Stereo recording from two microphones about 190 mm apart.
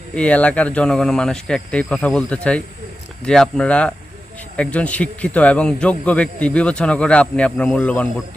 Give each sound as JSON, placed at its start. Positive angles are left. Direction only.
{"t": 0.1, "sound": "speech", "side_deg": 5}